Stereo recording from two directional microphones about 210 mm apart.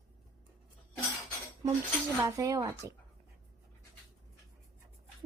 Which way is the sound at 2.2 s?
15° right (ahead or behind).